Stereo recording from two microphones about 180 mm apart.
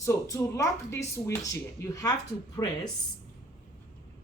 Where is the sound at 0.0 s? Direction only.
15° left (ahead or behind).